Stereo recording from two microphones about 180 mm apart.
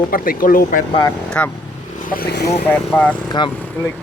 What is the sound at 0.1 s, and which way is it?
Speech, 50° left (ahead or behind).